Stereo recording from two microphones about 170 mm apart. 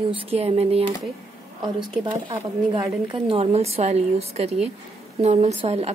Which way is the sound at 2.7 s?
30° right (ahead or behind).